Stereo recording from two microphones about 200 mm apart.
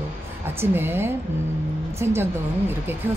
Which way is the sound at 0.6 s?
10° right (ahead or behind).